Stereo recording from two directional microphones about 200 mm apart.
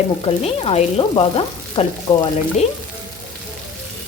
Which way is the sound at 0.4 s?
30° left (ahead or behind).